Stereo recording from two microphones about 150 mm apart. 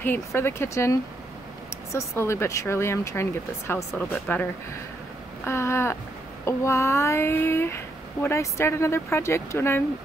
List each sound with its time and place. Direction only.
0.0 s speech: 15° left (ahead or behind)